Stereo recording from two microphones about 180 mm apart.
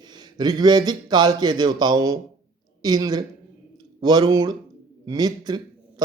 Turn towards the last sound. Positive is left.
turn(degrees=-20)  # may be behind; listen again after turning